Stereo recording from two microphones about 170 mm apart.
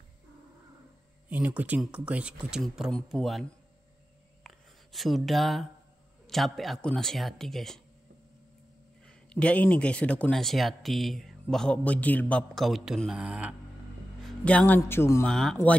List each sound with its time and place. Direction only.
1.3 s speech: 10° right (ahead or behind)
4.4 s a sound: centre (ahead or behind)
6.2 s speech: centre (ahead or behind)
9.0 s speech: 5° left (ahead or behind)
14.2 s speech: 5° left (ahead or behind)
15.2 s speech: centre (ahead or behind)